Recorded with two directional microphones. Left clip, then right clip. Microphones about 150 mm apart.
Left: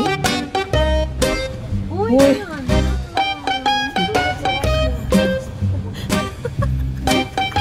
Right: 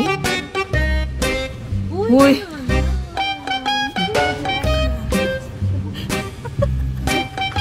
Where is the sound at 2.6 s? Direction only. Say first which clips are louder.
Left 2 dB; centre (ahead or behind).